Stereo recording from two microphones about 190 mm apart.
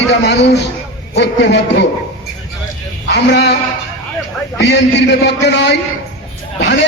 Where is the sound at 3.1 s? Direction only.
65° left (ahead or behind).